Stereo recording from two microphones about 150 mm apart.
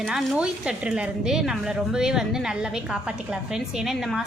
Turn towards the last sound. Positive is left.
turn(degrees=0)  # may be behind; listen again after turning